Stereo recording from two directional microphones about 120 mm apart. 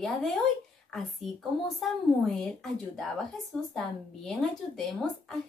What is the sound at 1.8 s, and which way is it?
A woman's voice, 5° left (ahead or behind).